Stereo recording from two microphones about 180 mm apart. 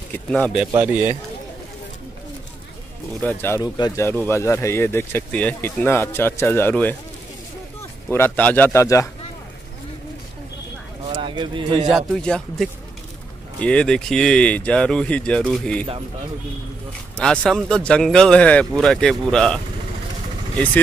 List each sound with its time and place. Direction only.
0.3 s speech: centre (ahead or behind)
3.2 s speech: 10° left (ahead or behind)
8.1 s speech: 10° left (ahead or behind)
11.1 s a man's voice: 25° right (ahead or behind)
11.9 s speech: 5° left (ahead or behind)
17.2 s speech: 5° left (ahead or behind)